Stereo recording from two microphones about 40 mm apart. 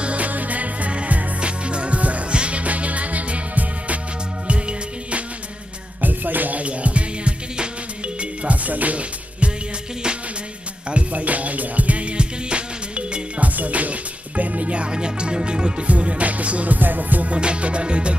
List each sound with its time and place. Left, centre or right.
0.0 s music: right
5.9 s music: right
6.6 s music: right
8.2 s music: right
10.9 s music: right
16.0 s music: right
17.3 s music: right